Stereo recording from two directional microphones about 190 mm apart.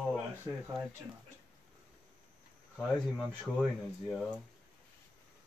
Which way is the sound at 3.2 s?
Centre (ahead or behind).